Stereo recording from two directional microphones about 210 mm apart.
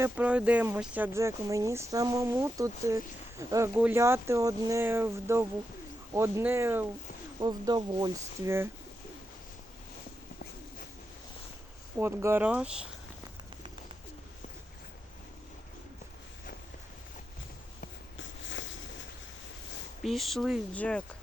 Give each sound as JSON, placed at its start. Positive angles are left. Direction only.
{"t": 0.0, "sound": "speech", "side_deg": -5}
{"t": 11.9, "sound": "speech", "side_deg": -10}
{"t": 18.2, "sound": "a sound", "side_deg": 60}
{"t": 20.0, "sound": "speech", "side_deg": 0}